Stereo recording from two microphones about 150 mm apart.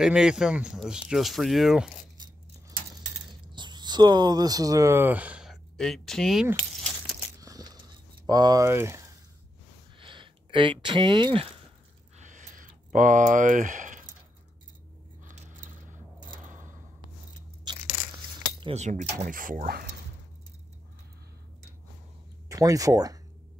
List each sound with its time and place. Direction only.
0.0 s speech: 5° right (ahead or behind)
3.5 s speech: 30° right (ahead or behind); by 6.4 s centre (ahead or behind)
7.4 s biting: 25° right (ahead or behind)
8.3 s speech: 25° right (ahead or behind)
9.9 s a sound: 35° right (ahead or behind)
12.2 s a sound: 55° right (ahead or behind)
15.2 s biting: 55° right (ahead or behind)
16.4 s a sound: 60° right (ahead or behind)
18.6 s speech: 45° right (ahead or behind)
19.3 s speech: 65° right (ahead or behind)
22.5 s speech: 20° right (ahead or behind)